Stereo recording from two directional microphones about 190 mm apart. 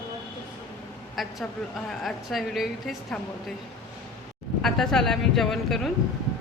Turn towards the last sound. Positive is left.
turn(degrees=0)  # may be behind; listen again after turning